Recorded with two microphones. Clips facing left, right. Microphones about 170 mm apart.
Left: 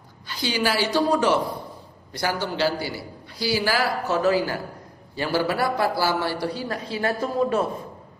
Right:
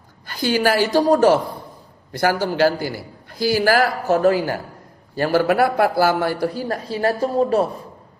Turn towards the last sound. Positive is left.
turn(degrees=-35)  # may be behind; listen again after turning